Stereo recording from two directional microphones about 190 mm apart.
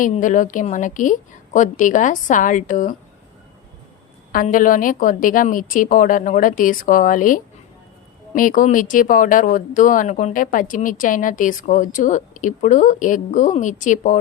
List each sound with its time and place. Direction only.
0.0 s speech: 45° left (ahead or behind)
4.3 s speech: 45° left (ahead or behind)